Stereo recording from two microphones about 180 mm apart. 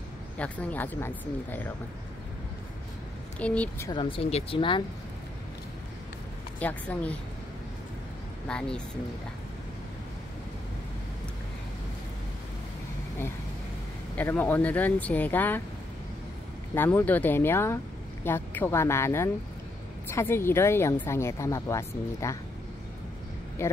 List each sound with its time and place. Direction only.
0.4 s speech: 10° left (ahead or behind)
3.3 s speech: 5° left (ahead or behind)
3.9 s speech: 30° left (ahead or behind)
6.6 s speech: 10° left (ahead or behind)
8.5 s speech: 5° left (ahead or behind)
14.1 s speech: 10° left (ahead or behind)
16.7 s speech: 10° left (ahead or behind)
23.6 s speech: 15° left (ahead or behind)